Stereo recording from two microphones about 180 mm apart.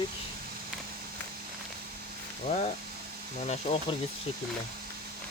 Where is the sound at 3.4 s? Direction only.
30° left (ahead or behind).